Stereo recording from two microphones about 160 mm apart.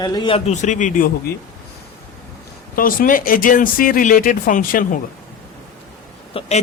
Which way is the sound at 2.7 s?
60° left (ahead or behind).